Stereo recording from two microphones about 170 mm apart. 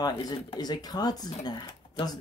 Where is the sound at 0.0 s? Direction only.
25° left (ahead or behind).